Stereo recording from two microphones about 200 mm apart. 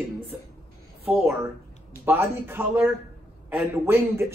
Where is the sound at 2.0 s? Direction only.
10° right (ahead or behind).